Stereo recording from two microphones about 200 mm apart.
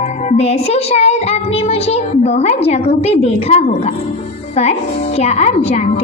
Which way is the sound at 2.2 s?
30° left (ahead or behind).